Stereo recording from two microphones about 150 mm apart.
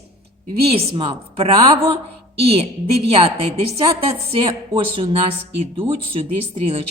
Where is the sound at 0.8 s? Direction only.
35° right (ahead or behind).